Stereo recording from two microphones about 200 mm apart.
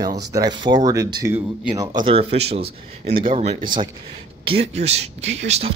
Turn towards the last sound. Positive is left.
turn(degrees=-35)  # may be behind; listen again after turning